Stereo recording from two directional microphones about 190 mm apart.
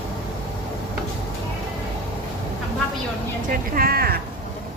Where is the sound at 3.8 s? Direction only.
50° right (ahead or behind).